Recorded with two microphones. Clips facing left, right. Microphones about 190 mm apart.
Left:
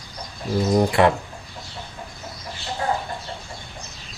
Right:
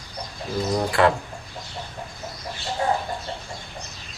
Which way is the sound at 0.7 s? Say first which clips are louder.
Left 3 dB; 25° left (ahead or behind).